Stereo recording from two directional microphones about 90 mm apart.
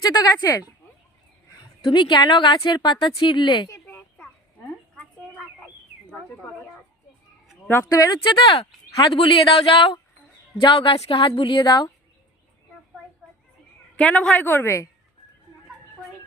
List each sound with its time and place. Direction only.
0.0 s a woman's voice: 45° left (ahead or behind)
4.9 s a sound: 10° left (ahead or behind)
7.9 s speech: 40° left (ahead or behind)
8.3 s a woman's voice: 65° left (ahead or behind)
9.1 s a woman's voice: 80° left; by 11.9 s 55° left (ahead or behind)
13.9 s a woman's voice: 15° left (ahead or behind)
14.4 s a woman's voice: 30° left (ahead or behind)